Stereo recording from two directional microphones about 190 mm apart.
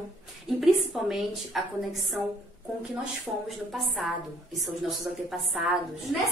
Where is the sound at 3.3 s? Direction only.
5° right (ahead or behind).